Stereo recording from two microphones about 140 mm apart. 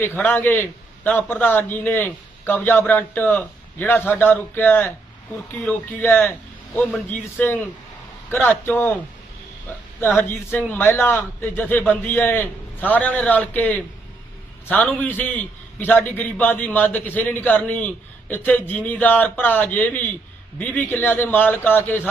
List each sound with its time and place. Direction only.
0.0 s a man's voice: 15° left (ahead or behind)
10.2 s a man's voice: 15° left (ahead or behind)